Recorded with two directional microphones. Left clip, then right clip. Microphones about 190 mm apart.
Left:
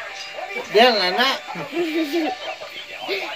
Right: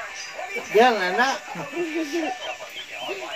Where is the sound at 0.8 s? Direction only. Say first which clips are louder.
Left 3 dB; 35° left (ahead or behind).